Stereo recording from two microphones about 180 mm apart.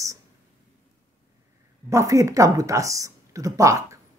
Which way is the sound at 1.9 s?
15° right (ahead or behind).